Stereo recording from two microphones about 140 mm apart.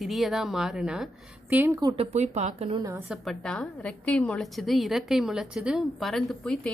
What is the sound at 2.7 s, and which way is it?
Speech, 25° right (ahead or behind).